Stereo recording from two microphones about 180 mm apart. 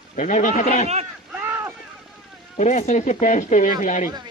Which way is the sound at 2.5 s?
40° left (ahead or behind).